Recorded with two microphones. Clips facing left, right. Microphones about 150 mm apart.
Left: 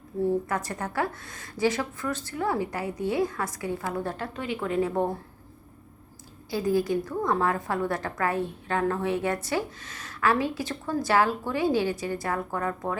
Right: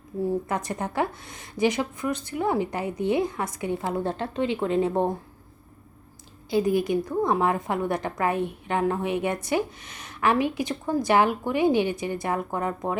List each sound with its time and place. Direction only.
0.2 s a woman's voice: 15° right (ahead or behind)
6.5 s a woman's voice: 20° right (ahead or behind)